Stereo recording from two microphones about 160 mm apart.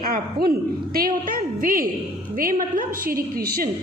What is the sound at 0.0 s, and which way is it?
A woman's voice, 70° right (ahead or behind).